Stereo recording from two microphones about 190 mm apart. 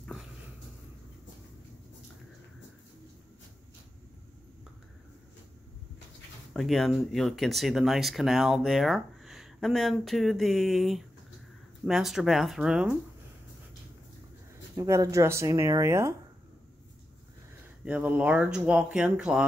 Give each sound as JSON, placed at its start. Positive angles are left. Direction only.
{"t": 6.5, "sound": "speech", "side_deg": 0}
{"t": 14.8, "sound": "speech", "side_deg": -15}
{"t": 17.8, "sound": "speech", "side_deg": -5}